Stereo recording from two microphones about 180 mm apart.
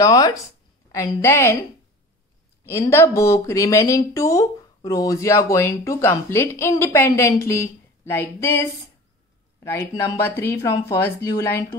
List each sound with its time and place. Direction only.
0.0 s speech: 20° left (ahead or behind)
2.6 s speech: 15° left (ahead or behind)